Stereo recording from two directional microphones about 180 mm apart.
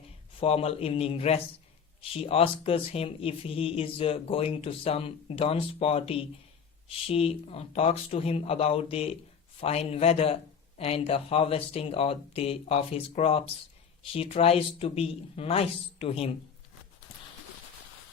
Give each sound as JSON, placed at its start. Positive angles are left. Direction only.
{"t": 0.3, "sound": "speech", "side_deg": 30}